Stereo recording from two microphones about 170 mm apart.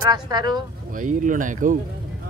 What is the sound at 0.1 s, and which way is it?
Speech, 25° right (ahead or behind).